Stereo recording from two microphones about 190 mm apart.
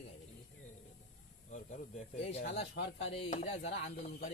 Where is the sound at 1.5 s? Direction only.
40° left (ahead or behind).